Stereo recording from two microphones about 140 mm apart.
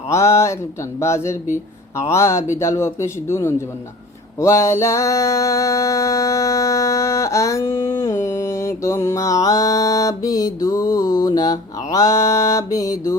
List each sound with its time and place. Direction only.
0.1 s speech: 20° left (ahead or behind)
4.4 s music: 20° left (ahead or behind)